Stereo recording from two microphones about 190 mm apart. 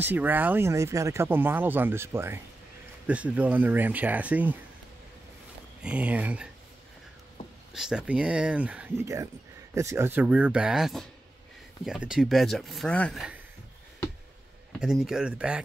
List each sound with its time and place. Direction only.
0.0 s speech: 10° right (ahead or behind)
5.8 s speech: 5° right (ahead or behind)
7.7 s speech: 5° right (ahead or behind)
14.8 s speech: 5° right (ahead or behind)